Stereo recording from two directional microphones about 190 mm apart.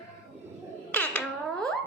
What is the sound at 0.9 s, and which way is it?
Music, 5° left (ahead or behind).